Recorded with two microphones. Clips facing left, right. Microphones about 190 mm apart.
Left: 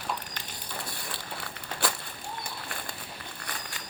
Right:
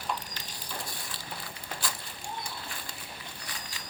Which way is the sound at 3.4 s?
55° left (ahead or behind).